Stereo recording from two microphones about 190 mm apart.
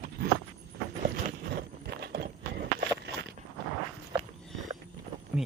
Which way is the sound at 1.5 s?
55° right (ahead or behind).